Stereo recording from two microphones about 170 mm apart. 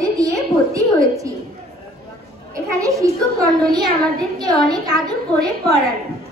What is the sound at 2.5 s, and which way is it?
A woman's voice, 20° right (ahead or behind).